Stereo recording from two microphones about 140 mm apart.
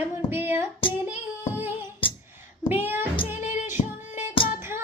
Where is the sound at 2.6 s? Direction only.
15° right (ahead or behind).